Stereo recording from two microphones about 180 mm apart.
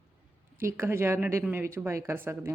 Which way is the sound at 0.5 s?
15° right (ahead or behind).